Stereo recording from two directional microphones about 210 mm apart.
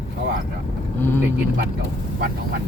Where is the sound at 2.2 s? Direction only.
45° right (ahead or behind).